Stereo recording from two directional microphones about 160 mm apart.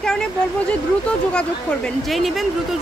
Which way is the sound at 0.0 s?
5° left (ahead or behind).